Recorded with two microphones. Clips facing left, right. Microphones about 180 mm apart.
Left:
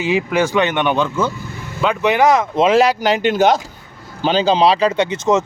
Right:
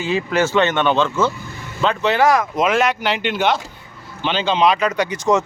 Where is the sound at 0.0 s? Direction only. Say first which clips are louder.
Left 2 dB; 15° left (ahead or behind).